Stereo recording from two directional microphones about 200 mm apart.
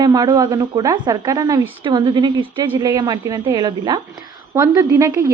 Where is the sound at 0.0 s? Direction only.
20° right (ahead or behind).